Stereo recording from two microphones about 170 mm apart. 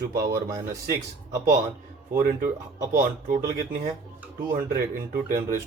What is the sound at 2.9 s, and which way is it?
A man's voice, 50° right (ahead or behind).